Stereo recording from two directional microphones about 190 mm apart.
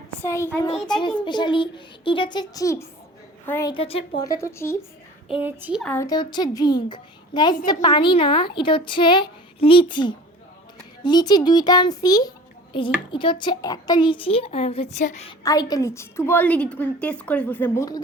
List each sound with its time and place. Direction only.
0.2 s a woman's voice: 15° left (ahead or behind)
1.2 s a child's voice: 25° left (ahead or behind)
3.7 s a woman's voice: 30° left (ahead or behind)
4.2 s a woman's voice: 15° left (ahead or behind)
5.3 s speech: 10° right (ahead or behind)
5.8 s a woman's voice: 10° left (ahead or behind)
6.1 s a child's voice: 20° left (ahead or behind); by 15.3 s 35° left (ahead or behind)
15.3 s a woman's voice: 20° left (ahead or behind)